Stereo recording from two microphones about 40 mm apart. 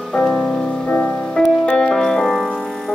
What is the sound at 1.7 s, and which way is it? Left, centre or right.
Music, centre.